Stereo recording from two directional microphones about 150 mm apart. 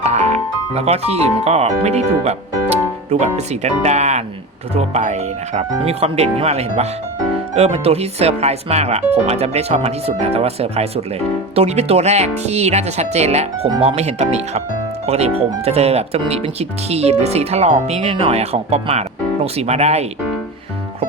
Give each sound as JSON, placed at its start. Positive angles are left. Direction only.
{"t": 0.0, "sound": "speech", "side_deg": -45}